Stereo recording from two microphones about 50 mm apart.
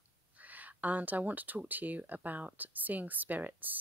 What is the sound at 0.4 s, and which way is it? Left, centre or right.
Speech, right.